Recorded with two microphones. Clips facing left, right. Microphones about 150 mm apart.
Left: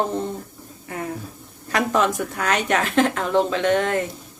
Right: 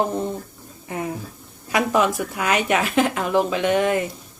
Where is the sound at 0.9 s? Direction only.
20° right (ahead or behind).